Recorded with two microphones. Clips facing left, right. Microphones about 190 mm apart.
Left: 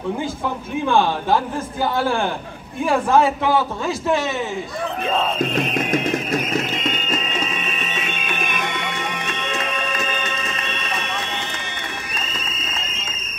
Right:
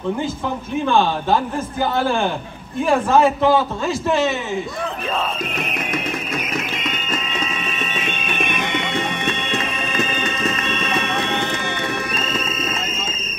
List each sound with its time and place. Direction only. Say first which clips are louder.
3.1 s a man's voice: right 2 dB; 15° left (ahead or behind)
5.9 s music: left 4 dB; 40° left (ahead or behind)